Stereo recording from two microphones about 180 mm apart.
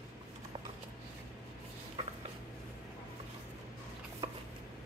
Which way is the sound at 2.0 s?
25° right (ahead or behind).